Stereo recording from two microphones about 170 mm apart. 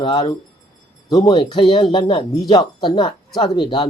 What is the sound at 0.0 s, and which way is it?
Speech, 25° left (ahead or behind).